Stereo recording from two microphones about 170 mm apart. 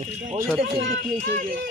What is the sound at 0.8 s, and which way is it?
Speech, 90° right.